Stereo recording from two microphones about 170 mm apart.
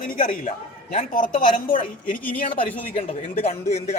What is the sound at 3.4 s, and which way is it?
Speech, 40° left (ahead or behind).